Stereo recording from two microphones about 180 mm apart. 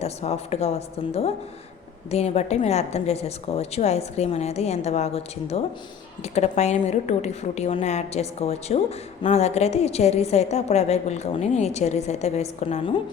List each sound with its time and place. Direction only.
0.0 s a woman's voice: 35° left (ahead or behind)